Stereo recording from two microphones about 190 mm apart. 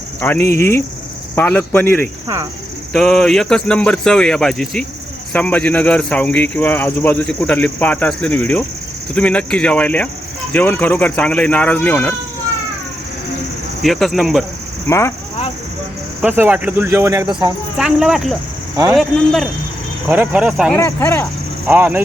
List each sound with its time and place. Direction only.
0.2 s speech: 10° left (ahead or behind)
2.2 s cricket: 15° right (ahead or behind)
2.9 s speech: centre (ahead or behind)
13.8 s speech: centre (ahead or behind)
14.8 s speech: 15° left (ahead or behind)
16.2 s speech: 10° right (ahead or behind)
17.7 s speech: 5° right (ahead or behind)
20.7 s speech: 10° left (ahead or behind)
21.7 s speech: 10° right (ahead or behind)